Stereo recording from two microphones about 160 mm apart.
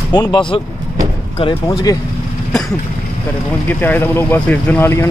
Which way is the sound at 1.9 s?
25° left (ahead or behind).